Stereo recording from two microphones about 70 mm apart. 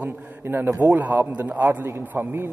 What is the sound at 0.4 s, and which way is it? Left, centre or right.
A man's voice, right.